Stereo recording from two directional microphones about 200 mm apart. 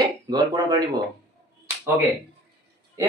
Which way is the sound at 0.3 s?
20° right (ahead or behind).